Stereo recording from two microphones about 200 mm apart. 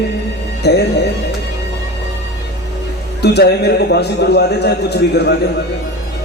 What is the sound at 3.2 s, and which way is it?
A man's voice, 55° left (ahead or behind).